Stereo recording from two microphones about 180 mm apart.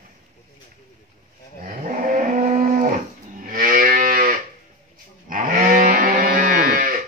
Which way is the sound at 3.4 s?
45° right (ahead or behind).